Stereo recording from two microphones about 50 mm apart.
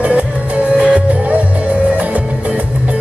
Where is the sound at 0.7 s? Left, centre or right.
Right.